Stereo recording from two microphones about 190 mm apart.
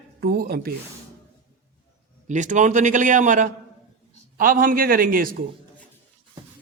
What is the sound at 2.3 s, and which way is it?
A man's voice, 40° right (ahead or behind).